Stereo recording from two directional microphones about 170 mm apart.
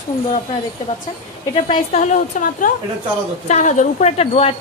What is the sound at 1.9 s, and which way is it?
A woman's voice, 45° left (ahead or behind).